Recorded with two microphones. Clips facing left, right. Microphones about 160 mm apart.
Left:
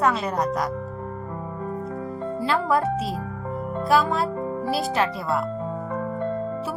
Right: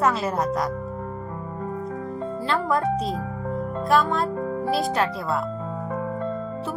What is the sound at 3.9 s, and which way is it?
Speech, 5° left (ahead or behind).